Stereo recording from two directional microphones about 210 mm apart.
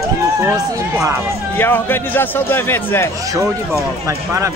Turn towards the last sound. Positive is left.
turn(degrees=-15)  # may be behind; listen again after turning